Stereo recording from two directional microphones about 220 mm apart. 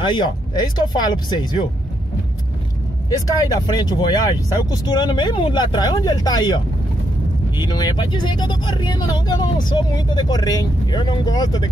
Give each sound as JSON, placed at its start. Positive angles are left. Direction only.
{"t": 0.0, "sound": "speech", "side_deg": 20}
{"t": 3.1, "sound": "speech", "side_deg": 15}